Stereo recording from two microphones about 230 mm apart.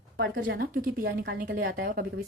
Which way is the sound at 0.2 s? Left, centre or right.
Right.